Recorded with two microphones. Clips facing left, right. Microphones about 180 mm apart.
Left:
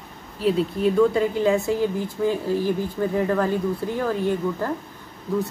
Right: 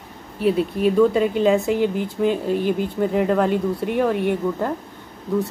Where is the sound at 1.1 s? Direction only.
20° right (ahead or behind).